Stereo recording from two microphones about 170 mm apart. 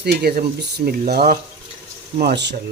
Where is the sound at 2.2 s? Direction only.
80° right.